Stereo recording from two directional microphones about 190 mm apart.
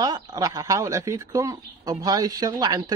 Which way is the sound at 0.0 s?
20° right (ahead or behind).